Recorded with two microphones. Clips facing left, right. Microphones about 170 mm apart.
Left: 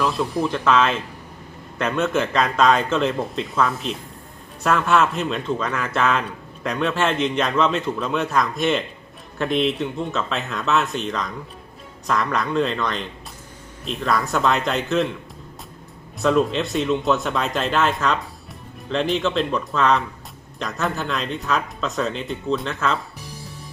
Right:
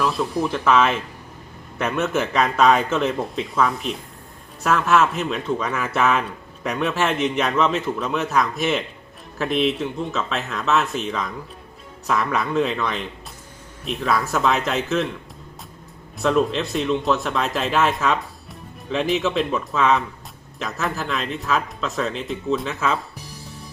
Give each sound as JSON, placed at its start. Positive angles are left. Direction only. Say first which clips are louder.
{"t": 0.0, "sound": "speech", "louder": "even", "side_deg": -5}
{"t": 16.2, "sound": "speech", "louder": "left 1 dB", "side_deg": 0}